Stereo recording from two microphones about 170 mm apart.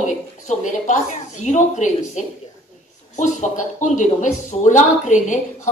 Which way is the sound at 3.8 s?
45° left (ahead or behind).